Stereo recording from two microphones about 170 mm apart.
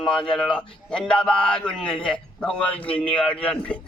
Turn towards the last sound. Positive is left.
turn(degrees=5)  # may be behind; listen again after turning